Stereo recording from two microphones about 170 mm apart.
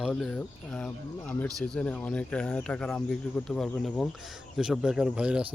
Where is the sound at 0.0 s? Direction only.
Centre (ahead or behind).